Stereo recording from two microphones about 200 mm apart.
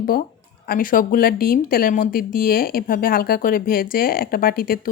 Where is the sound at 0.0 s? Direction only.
45° left (ahead or behind).